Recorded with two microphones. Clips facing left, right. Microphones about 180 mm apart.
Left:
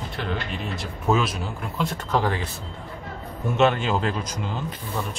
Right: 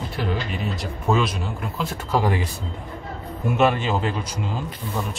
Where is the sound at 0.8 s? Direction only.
Centre (ahead or behind).